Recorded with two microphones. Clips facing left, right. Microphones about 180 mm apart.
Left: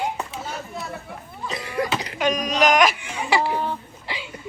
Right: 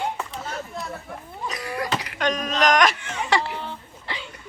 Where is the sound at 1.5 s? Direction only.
25° left (ahead or behind).